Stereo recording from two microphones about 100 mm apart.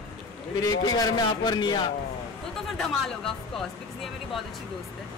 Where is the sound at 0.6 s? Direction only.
40° left (ahead or behind).